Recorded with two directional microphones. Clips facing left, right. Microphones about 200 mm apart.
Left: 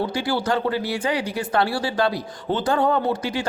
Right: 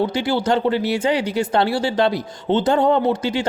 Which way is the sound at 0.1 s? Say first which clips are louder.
Right 4 dB; 20° right (ahead or behind).